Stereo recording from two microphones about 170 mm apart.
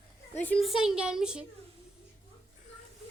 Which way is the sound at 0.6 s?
Centre (ahead or behind).